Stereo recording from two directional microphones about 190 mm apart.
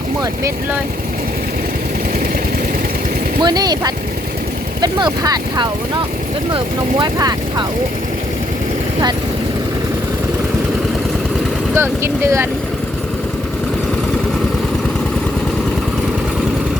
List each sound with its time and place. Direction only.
3.4 s speech: 20° right (ahead or behind)
7.0 s speech: 20° right (ahead or behind)
11.7 s speech: 15° right (ahead or behind)